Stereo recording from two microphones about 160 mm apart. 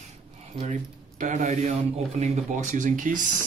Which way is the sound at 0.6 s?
45° right (ahead or behind).